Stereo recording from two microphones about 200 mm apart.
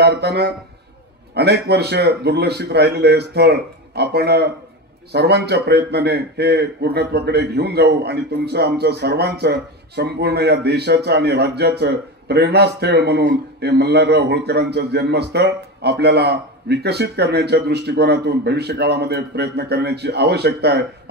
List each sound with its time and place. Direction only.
0.0 s a man's voice: 55° right (ahead or behind)